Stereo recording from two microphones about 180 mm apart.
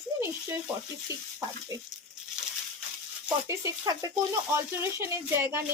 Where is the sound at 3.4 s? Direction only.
15° right (ahead or behind).